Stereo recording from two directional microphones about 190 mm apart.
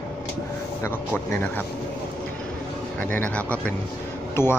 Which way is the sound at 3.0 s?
10° left (ahead or behind).